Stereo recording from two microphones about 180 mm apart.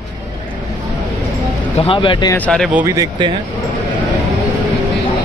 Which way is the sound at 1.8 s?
30° left (ahead or behind).